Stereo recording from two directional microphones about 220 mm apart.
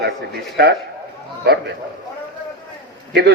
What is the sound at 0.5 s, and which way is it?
A man's voice, 50° right (ahead or behind).